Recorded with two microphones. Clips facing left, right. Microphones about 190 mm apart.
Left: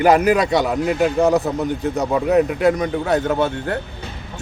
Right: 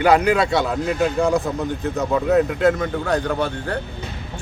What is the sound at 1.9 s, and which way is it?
Speech, 15° left (ahead or behind).